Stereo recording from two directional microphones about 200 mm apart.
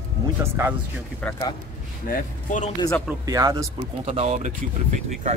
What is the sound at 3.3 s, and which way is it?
Speech, 15° right (ahead or behind).